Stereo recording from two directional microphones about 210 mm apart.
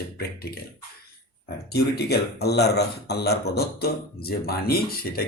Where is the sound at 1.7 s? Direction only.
50° left (ahead or behind).